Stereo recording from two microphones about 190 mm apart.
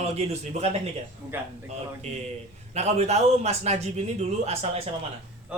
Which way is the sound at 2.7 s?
35° right (ahead or behind).